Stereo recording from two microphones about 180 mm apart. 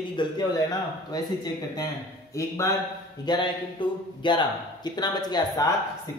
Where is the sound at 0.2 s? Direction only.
25° left (ahead or behind).